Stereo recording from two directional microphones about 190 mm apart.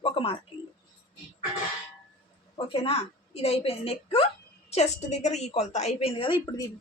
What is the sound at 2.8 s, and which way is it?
A woman's voice, 30° left (ahead or behind).